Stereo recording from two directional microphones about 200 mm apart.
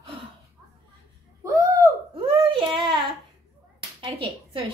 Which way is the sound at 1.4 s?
15° right (ahead or behind).